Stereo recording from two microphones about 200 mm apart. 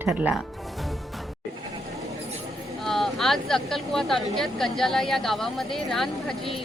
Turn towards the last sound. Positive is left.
turn(degrees=0)  # may be behind; listen again after turning